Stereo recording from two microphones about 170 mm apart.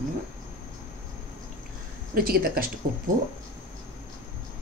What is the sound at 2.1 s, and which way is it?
Speech, 60° right (ahead or behind).